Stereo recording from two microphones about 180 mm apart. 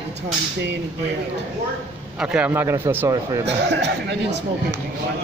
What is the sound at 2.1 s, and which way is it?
A man's voice, 5° right (ahead or behind).